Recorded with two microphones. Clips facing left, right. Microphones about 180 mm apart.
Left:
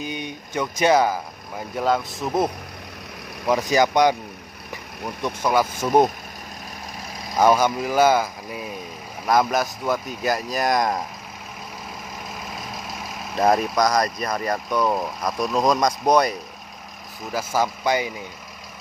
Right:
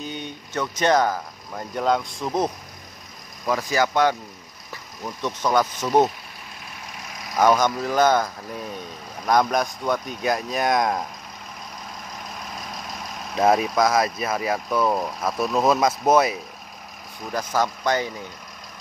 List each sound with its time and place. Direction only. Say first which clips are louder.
0.0 s speech: left 2 dB; 10° left (ahead or behind)
3.4 s speech: left 3 dB; 20° left (ahead or behind)
7.3 s speech: left 1 dB; 10° left (ahead or behind)
13.3 s speech: even; centre (ahead or behind)
17.3 s speech: left 1 dB; 10° left (ahead or behind)